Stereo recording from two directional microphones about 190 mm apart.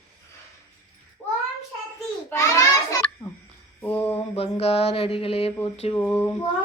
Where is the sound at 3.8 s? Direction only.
10° left (ahead or behind).